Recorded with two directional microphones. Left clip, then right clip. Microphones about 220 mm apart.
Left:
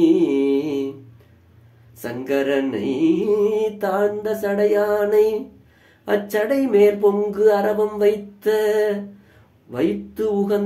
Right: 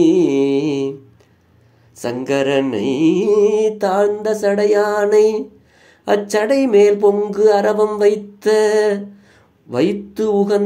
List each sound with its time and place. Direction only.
0.0 s mantra: 35° right (ahead or behind)
2.0 s mantra: 40° right (ahead or behind)